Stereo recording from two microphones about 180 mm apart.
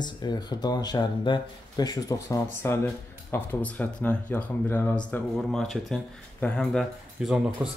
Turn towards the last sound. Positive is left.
turn(degrees=-10)  # may be behind; listen again after turning